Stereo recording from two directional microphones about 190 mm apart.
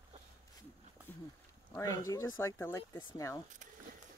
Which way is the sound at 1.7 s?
15° left (ahead or behind).